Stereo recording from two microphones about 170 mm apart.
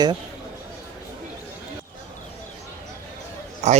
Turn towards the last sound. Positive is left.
turn(degrees=-40)  # may be behind; listen again after turning